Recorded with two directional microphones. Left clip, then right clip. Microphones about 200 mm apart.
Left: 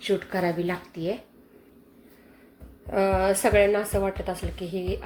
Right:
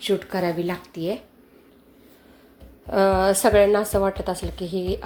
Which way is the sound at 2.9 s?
20° right (ahead or behind).